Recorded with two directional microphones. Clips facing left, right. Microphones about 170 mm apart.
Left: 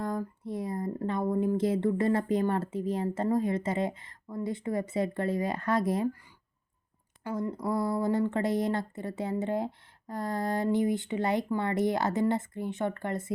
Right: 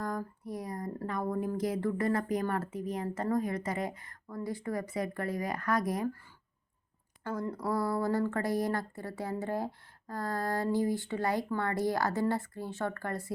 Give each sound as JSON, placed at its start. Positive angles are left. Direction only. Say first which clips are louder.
{"t": 0.0, "sound": "speech", "louder": "left 3 dB", "side_deg": 25}
{"t": 7.3, "sound": "speech", "louder": "left 2 dB", "side_deg": 15}